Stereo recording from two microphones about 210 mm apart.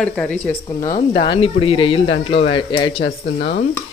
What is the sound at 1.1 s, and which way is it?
Speech, 25° left (ahead or behind).